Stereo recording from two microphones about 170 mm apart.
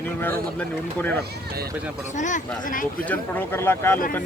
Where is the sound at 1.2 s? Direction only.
65° right (ahead or behind).